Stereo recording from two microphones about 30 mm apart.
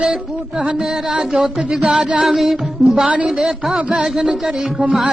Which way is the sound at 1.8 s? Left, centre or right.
Right.